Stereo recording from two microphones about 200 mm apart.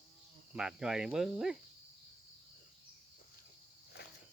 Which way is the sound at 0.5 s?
5° right (ahead or behind).